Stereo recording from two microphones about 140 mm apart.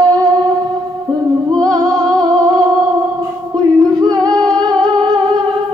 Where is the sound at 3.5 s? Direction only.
30° right (ahead or behind).